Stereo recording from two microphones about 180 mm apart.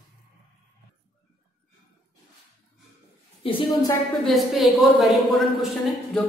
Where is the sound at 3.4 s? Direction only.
30° left (ahead or behind).